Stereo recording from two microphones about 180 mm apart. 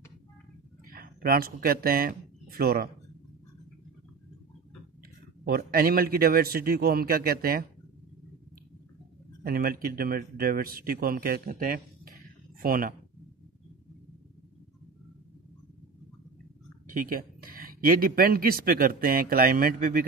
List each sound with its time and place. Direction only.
0.8 s speech: 55° right (ahead or behind)
5.4 s speech: 55° right (ahead or behind)
9.4 s speech: 55° right (ahead or behind)
16.8 s speech: 50° right (ahead or behind)